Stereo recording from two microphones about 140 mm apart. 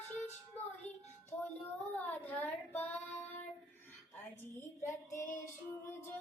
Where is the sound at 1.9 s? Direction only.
10° left (ahead or behind).